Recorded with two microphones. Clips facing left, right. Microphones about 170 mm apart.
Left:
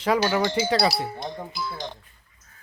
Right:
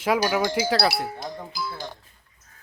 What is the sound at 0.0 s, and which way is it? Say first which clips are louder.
Cowbell: even; 10° right (ahead or behind).